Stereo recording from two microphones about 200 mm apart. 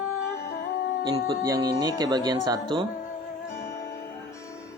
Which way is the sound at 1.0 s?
20° right (ahead or behind).